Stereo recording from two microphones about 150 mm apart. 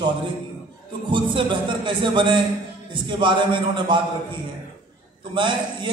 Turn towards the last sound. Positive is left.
turn(degrees=-35)  # may be behind; listen again after turning